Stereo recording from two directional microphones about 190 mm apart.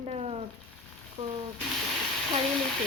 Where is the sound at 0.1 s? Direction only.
30° right (ahead or behind).